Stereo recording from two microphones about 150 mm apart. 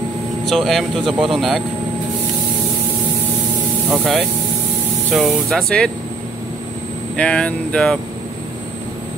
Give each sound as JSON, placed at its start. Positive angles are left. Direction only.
{"t": 0.5, "sound": "speech", "side_deg": 0}
{"t": 3.9, "sound": "speech", "side_deg": -5}
{"t": 7.2, "sound": "speech", "side_deg": 5}